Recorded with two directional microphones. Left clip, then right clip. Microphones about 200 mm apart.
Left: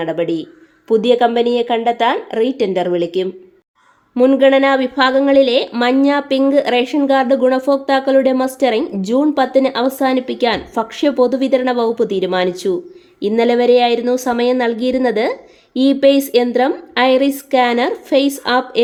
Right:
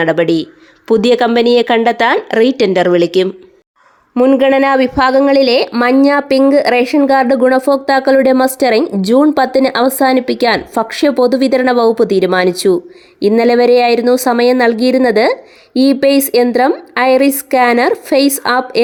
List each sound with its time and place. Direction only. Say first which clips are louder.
0.0 s speech: right 7 dB; 30° right (ahead or behind)
4.1 s speech: right 1 dB; 15° right (ahead or behind)